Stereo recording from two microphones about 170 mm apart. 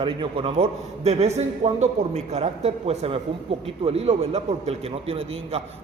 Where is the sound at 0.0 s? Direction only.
30° right (ahead or behind).